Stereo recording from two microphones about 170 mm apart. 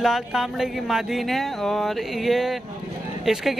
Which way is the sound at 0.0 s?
Centre (ahead or behind).